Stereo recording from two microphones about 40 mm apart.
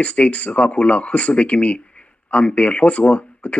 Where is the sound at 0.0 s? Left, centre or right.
Left.